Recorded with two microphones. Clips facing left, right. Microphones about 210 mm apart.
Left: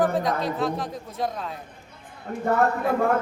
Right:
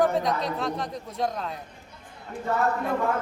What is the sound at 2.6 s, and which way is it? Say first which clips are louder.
Speech: left 2 dB; 55° left (ahead or behind).